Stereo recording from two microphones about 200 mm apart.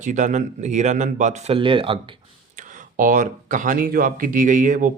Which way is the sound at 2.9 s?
40° right (ahead or behind).